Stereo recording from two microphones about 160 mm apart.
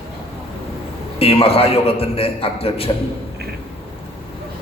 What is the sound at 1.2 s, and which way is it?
A man's voice, 35° left (ahead or behind).